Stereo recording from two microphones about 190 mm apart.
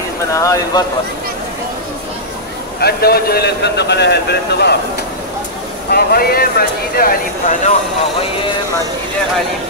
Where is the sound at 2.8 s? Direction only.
55° left (ahead or behind).